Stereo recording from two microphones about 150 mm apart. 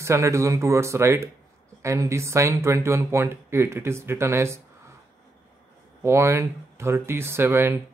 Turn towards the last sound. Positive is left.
turn(degrees=-15)  # may be behind; listen again after turning